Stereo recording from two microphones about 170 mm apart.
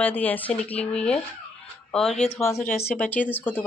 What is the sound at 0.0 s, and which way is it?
A woman's voice, 10° left (ahead or behind).